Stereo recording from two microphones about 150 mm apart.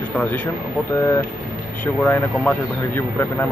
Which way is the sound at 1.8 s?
10° left (ahead or behind).